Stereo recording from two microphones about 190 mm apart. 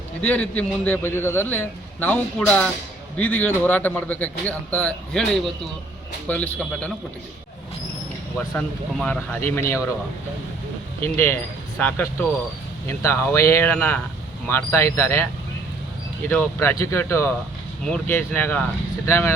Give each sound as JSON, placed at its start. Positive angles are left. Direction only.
{"t": 0.2, "sound": "a man's voice", "side_deg": 5}
{"t": 8.4, "sound": "a man's voice", "side_deg": 5}
{"t": 11.0, "sound": "a man's voice", "side_deg": 10}
{"t": 16.3, "sound": "a man's voice", "side_deg": 10}